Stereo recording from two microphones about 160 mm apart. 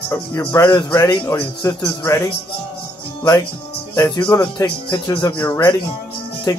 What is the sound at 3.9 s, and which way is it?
Speech, 25° left (ahead or behind).